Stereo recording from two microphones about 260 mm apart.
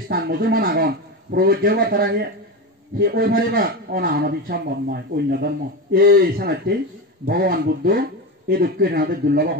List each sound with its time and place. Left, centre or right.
0.1 s a man's voice: right